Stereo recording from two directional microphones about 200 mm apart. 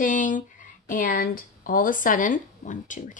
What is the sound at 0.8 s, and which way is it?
A woman's voice, 45° left (ahead or behind).